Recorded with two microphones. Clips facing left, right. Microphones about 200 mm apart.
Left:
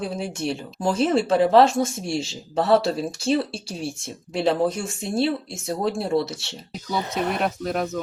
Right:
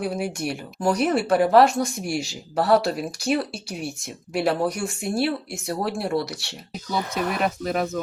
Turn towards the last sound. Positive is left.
turn(degrees=0)  # may be behind; listen again after turning